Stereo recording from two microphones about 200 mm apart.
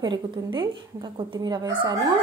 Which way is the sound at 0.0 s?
20° right (ahead or behind).